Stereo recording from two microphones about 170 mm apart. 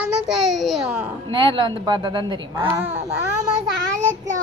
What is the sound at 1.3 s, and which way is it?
A woman's voice, 30° right (ahead or behind).